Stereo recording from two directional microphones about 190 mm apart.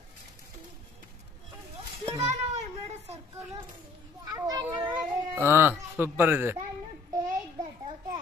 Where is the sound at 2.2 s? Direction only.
35° right (ahead or behind).